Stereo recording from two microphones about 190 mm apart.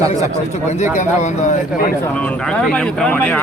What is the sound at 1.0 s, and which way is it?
Speech, 40° left (ahead or behind).